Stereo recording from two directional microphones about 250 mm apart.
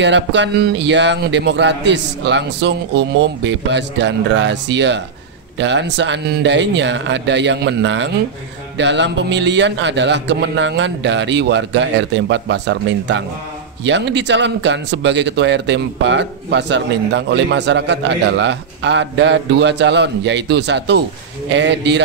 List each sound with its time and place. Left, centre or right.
0.0 s speech: right